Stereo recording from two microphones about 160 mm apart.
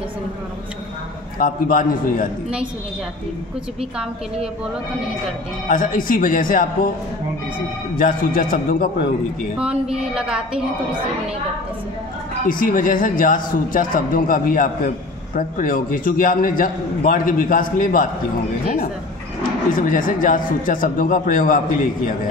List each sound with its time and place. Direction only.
1.4 s a man's voice: 60° left (ahead or behind)
5.7 s a man's voice: 60° left (ahead or behind)
7.9 s a man's voice: 60° left (ahead or behind)
9.6 s a woman's voice: 5° right (ahead or behind)
12.4 s a man's voice: 60° left (ahead or behind)
19.7 s a man's voice: 60° left (ahead or behind)